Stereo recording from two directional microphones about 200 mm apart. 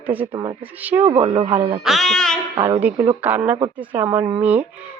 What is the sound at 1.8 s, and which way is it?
Speech, centre (ahead or behind).